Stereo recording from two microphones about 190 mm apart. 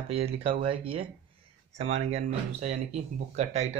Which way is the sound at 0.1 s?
30° right (ahead or behind).